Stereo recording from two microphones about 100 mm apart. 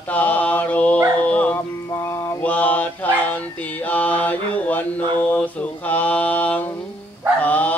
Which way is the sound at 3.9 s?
15° left (ahead or behind).